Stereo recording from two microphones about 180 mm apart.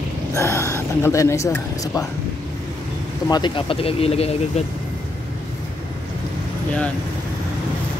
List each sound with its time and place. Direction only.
0.3 s speech: 15° left (ahead or behind)
3.3 s speech: 25° left (ahead or behind)